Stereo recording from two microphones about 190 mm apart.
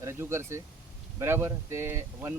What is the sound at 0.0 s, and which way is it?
Speech, 15° right (ahead or behind).